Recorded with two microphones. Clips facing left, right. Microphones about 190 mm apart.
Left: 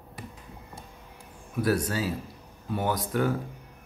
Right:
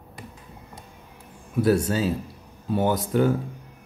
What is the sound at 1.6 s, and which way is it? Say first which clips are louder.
Speech: right 5 dB; 25° right (ahead or behind).